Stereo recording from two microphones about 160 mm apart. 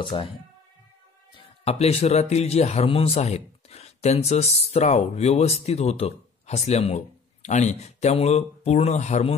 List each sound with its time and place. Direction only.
0.0 s speech: 30° left (ahead or behind)
1.3 s speech: 35° left (ahead or behind)